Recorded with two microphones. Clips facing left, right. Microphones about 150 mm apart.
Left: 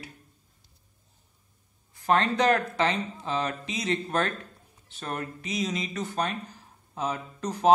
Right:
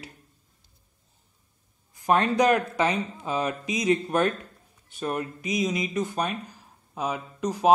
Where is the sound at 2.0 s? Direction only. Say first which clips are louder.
Right 2 dB; 15° right (ahead or behind).